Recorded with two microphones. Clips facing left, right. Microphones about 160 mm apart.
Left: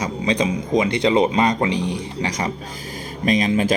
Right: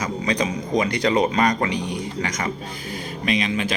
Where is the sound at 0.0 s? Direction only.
25° left (ahead or behind).